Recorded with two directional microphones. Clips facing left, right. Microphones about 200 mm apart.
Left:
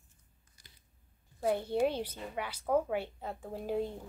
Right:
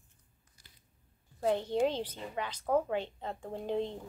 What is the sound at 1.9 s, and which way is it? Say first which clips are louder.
A woman's voice: even; 10° left (ahead or behind).